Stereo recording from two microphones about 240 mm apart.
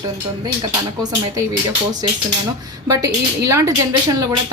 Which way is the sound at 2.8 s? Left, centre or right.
Centre.